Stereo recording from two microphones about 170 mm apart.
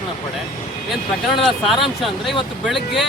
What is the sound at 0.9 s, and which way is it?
Speech, centre (ahead or behind).